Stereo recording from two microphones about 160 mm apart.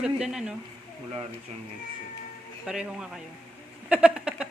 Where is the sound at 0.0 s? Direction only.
5° right (ahead or behind).